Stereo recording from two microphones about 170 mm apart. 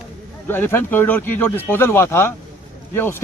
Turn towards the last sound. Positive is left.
turn(degrees=15)  # may be behind; listen again after turning